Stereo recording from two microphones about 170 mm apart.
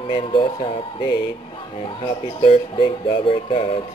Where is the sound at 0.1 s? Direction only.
30° left (ahead or behind).